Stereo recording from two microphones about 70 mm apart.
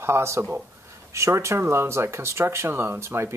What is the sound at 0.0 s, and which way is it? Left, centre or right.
Speech, right.